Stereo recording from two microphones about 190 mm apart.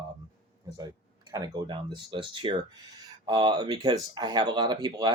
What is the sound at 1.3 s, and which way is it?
Speech, 20° right (ahead or behind).